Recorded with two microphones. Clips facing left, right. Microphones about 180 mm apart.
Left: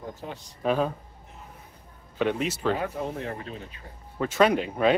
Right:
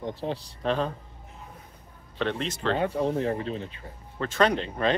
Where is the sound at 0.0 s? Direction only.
30° right (ahead or behind).